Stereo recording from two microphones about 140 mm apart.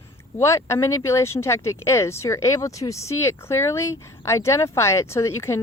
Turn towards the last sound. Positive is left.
turn(degrees=20)  # may be behind; listen again after turning